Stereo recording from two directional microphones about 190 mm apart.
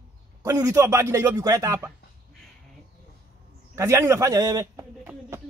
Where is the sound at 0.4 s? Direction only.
15° right (ahead or behind).